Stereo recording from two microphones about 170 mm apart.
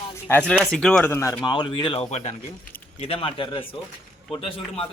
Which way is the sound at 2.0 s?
40° left (ahead or behind).